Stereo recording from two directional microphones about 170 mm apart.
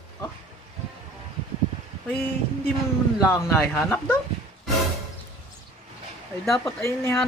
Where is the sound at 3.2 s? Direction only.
10° left (ahead or behind).